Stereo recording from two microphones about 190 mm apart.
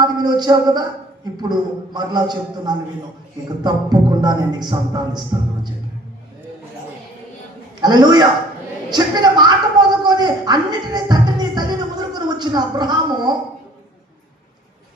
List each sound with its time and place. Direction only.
0.0 s a man's voice: 20° right (ahead or behind)
2.0 s a man's voice: 20° right (ahead or behind)
7.8 s a man's voice: 20° right (ahead or behind)